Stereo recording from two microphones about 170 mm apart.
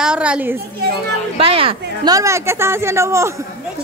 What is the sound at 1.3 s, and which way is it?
A woman's voice, 35° right (ahead or behind).